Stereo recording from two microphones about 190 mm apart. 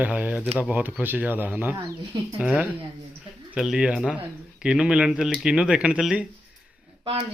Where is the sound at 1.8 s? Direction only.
20° right (ahead or behind).